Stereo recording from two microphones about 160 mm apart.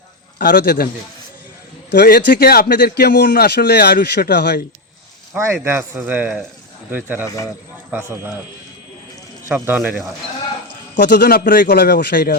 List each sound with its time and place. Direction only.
0.3 s a man's voice: 70° left (ahead or behind)
1.9 s a man's voice: 80° left
5.6 s speech: 15° right (ahead or behind)
9.6 s speech: 10° right (ahead or behind)
10.9 s a man's voice: 90° left